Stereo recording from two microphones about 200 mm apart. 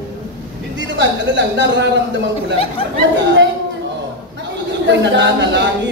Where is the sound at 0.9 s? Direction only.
65° right (ahead or behind).